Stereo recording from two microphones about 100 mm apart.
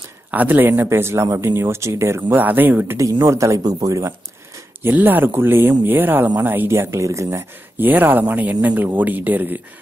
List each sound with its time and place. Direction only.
0.3 s speech: 20° right (ahead or behind)
3.0 s speech: 35° right (ahead or behind)
4.8 s speech: 20° right (ahead or behind)
7.9 s speech: 20° right (ahead or behind)